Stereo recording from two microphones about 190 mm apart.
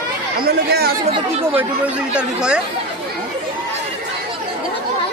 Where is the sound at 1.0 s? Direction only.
30° right (ahead or behind).